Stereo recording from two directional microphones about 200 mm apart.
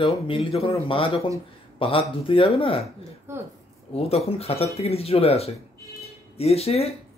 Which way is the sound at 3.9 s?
30° left (ahead or behind).